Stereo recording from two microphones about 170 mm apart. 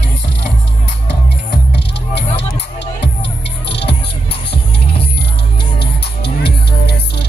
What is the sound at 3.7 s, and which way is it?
Music, 80° left.